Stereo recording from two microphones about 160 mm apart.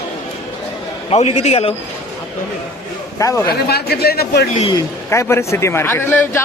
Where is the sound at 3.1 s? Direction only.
20° left (ahead or behind).